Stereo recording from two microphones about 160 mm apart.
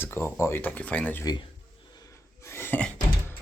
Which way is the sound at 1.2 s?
25° left (ahead or behind).